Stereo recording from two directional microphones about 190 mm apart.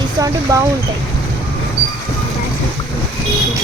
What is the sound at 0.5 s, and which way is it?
Speech, 20° right (ahead or behind).